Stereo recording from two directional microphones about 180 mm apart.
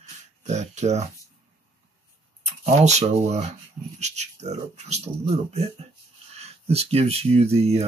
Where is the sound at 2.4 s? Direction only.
40° right (ahead or behind).